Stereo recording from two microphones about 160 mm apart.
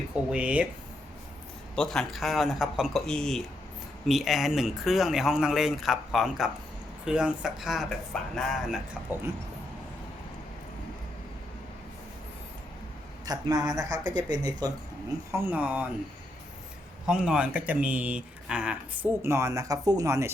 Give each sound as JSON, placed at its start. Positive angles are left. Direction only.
{"t": 0.3, "sound": "speech", "side_deg": -10}
{"t": 1.7, "sound": "speech", "side_deg": 5}
{"t": 13.2, "sound": "speech", "side_deg": -25}
{"t": 15.3, "sound": "speech", "side_deg": -10}
{"t": 17.1, "sound": "speech", "side_deg": -5}
{"t": 19.2, "sound": "speech", "side_deg": -20}